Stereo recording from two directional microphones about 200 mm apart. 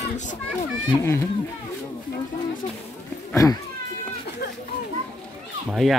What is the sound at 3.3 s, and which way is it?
Speech, 15° left (ahead or behind).